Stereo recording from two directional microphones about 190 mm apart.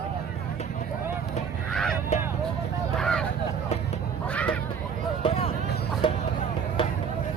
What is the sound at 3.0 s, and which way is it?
Speech, 5° left (ahead or behind).